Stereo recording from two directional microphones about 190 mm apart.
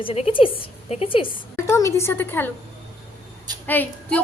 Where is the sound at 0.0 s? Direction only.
30° left (ahead or behind).